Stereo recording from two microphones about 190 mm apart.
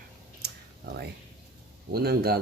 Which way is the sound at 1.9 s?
55° right (ahead or behind).